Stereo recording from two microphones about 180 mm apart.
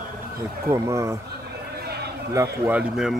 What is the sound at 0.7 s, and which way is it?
Speech, 15° right (ahead or behind).